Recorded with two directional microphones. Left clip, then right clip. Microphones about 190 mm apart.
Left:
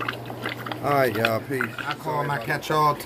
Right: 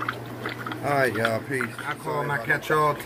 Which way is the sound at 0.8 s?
10° left (ahead or behind).